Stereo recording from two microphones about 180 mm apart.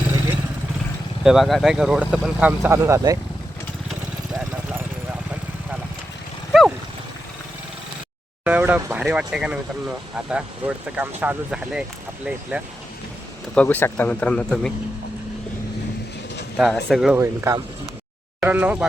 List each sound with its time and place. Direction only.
1.2 s speech: centre (ahead or behind); by 3.2 s 15° right (ahead or behind)
6.5 s a sound: centre (ahead or behind)
8.4 s speech: 10° right (ahead or behind)
13.5 s speech: 10° left (ahead or behind)
16.6 s speech: centre (ahead or behind)
17.2 s speech: 15° right (ahead or behind)